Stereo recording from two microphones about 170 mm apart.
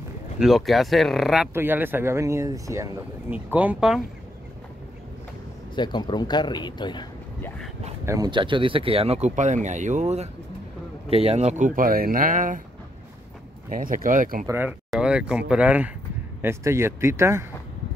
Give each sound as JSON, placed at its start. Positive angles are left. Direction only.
{"t": 0.4, "sound": "speech", "side_deg": 0}
{"t": 1.5, "sound": "speech", "side_deg": -10}
{"t": 5.8, "sound": "speech", "side_deg": 25}
{"t": 7.4, "sound": "speech", "side_deg": 5}
{"t": 8.0, "sound": "speech", "side_deg": -15}
{"t": 8.3, "sound": "speech", "side_deg": -30}
{"t": 13.7, "sound": "speech", "side_deg": -55}
{"t": 14.5, "sound": "speech", "side_deg": -10}